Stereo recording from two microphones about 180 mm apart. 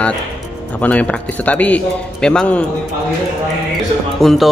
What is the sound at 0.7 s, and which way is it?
Speech, 10° left (ahead or behind).